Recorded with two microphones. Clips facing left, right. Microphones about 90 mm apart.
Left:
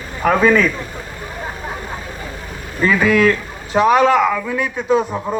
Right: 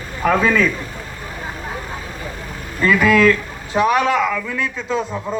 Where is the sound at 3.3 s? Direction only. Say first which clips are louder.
Right 1 dB; 25° left (ahead or behind).